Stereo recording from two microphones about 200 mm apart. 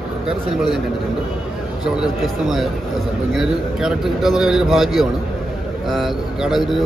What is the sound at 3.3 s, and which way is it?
A man's voice, centre (ahead or behind).